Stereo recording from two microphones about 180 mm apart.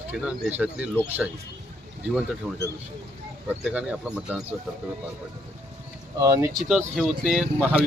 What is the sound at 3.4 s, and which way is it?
Speech, 5° right (ahead or behind).